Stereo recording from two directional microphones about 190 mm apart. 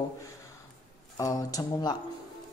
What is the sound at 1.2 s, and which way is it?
Speech, 20° left (ahead or behind).